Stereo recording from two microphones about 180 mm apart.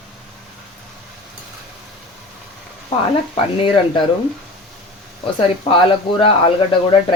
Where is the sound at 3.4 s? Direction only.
30° left (ahead or behind).